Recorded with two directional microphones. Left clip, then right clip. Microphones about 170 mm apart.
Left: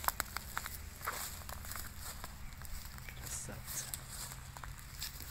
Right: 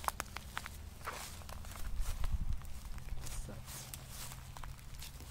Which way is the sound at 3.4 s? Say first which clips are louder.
Left 3 dB; 5° left (ahead or behind).